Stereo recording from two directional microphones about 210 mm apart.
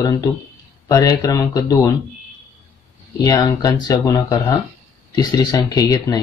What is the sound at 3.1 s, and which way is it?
Speech, 20° left (ahead or behind).